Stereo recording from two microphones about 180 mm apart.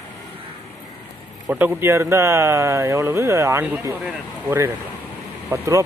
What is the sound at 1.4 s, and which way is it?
Speech, 10° right (ahead or behind).